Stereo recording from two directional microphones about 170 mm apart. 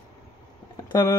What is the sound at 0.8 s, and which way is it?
Speech, 20° left (ahead or behind).